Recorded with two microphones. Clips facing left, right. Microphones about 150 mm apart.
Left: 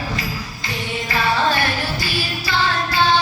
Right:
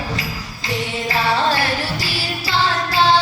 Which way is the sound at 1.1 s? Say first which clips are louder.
Even; 30° right (ahead or behind).